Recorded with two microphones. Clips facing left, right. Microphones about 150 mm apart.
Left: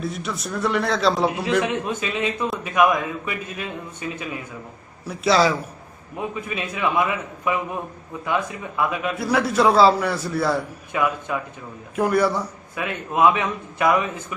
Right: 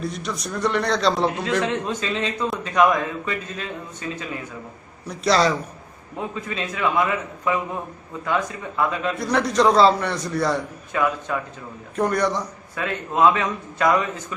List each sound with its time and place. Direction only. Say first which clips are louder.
0.0 s a man's voice: even; centre (ahead or behind)
6.1 s a man's voice: left 1 dB; 15° left (ahead or behind)
11.3 s a man's voice: even; 15° left (ahead or behind)